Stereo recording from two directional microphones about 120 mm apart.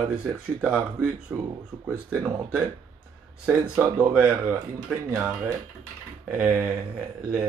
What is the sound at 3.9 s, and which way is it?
Speech, 10° right (ahead or behind).